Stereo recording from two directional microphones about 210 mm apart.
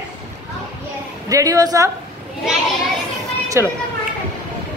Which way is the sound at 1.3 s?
15° right (ahead or behind).